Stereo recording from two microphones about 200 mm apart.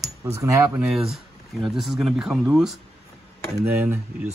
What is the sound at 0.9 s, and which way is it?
Speech, centre (ahead or behind).